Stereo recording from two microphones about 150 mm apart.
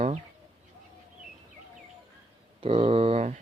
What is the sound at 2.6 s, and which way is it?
Speech, 40° right (ahead or behind).